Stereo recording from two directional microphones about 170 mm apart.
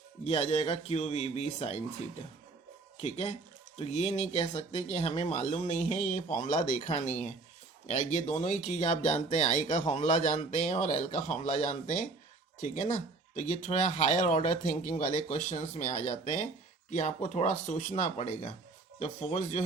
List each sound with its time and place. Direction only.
0.3 s speech: 35° left (ahead or behind)
3.0 s speech: 40° left (ahead or behind)